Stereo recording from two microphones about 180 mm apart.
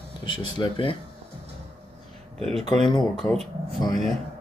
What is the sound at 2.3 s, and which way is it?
Speech, 35° right (ahead or behind).